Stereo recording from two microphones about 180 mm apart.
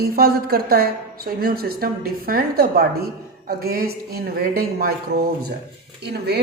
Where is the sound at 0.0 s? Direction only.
60° right (ahead or behind).